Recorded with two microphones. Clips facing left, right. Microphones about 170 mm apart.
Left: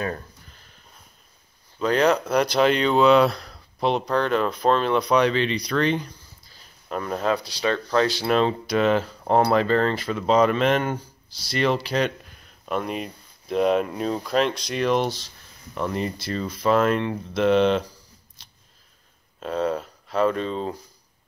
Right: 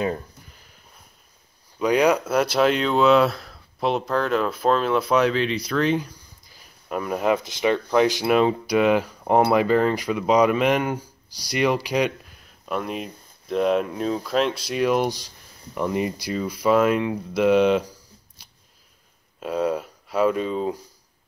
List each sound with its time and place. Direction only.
1.8 s speech: 10° right (ahead or behind)
18.4 s biting: 10° right (ahead or behind)
19.4 s speech: 10° right (ahead or behind)